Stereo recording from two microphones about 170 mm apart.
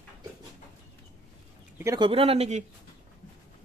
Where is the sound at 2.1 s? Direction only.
35° right (ahead or behind).